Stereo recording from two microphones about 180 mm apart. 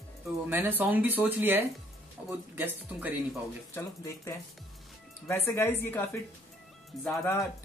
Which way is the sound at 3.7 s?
15° left (ahead or behind).